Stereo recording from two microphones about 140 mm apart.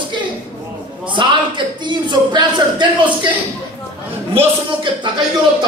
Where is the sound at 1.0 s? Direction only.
35° right (ahead or behind).